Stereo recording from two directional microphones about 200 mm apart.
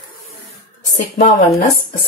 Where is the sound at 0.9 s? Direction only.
40° left (ahead or behind).